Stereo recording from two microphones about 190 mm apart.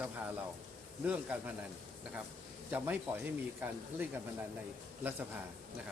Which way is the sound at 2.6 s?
10° right (ahead or behind).